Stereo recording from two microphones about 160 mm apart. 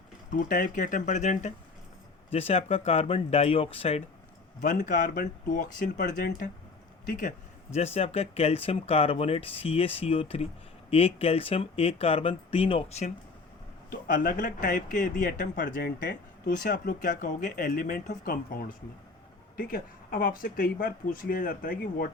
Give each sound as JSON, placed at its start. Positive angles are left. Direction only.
{"t": 0.3, "sound": "speech", "side_deg": 60}
{"t": 4.6, "sound": "speech", "side_deg": 55}
{"t": 13.9, "sound": "speech", "side_deg": 60}
{"t": 15.5, "sound": "speech", "side_deg": 85}
{"t": 19.5, "sound": "speech", "side_deg": 65}